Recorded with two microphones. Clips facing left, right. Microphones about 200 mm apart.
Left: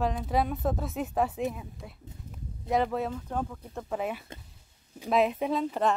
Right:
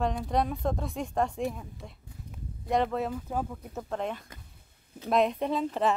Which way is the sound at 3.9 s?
5° left (ahead or behind).